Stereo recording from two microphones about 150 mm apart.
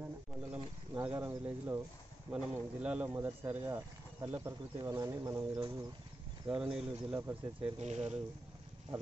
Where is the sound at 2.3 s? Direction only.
10° right (ahead or behind).